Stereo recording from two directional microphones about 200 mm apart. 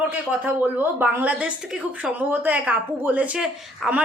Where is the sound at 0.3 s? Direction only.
10° right (ahead or behind).